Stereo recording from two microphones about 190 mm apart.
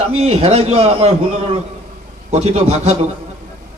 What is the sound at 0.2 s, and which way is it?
A man's voice, 35° right (ahead or behind).